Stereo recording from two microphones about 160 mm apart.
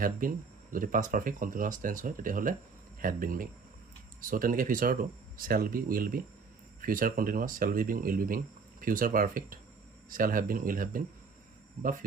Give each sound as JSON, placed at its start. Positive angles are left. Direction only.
{"t": 0.0, "sound": "speech", "side_deg": -60}